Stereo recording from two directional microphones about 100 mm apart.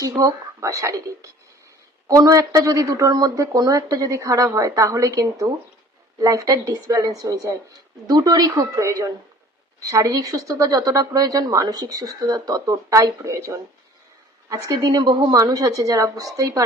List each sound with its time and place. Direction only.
0.0 s a woman's voice: 35° right (ahead or behind)
14.5 s a woman's voice: 45° right (ahead or behind)